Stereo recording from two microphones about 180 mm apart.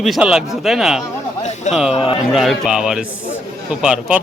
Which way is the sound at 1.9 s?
30° left (ahead or behind).